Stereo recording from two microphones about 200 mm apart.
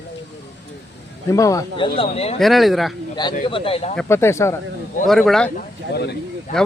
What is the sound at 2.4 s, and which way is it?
Speech, centre (ahead or behind).